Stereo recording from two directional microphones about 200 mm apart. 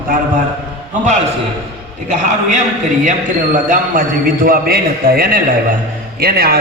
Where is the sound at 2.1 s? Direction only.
35° right (ahead or behind).